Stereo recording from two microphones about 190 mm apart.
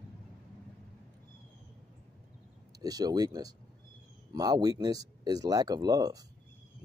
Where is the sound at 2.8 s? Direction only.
20° right (ahead or behind).